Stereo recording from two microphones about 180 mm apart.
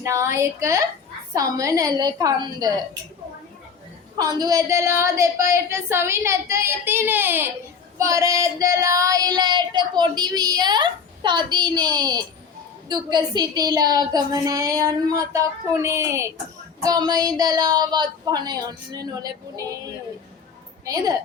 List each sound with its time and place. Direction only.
0.0 s a woman's voice: 15° right (ahead or behind)
1.3 s child singing: 20° right (ahead or behind)
4.2 s a woman's voice: 20° right (ahead or behind)
7.9 s child singing: 20° right (ahead or behind)